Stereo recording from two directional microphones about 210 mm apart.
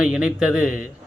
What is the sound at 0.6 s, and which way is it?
Speech, 40° left (ahead or behind).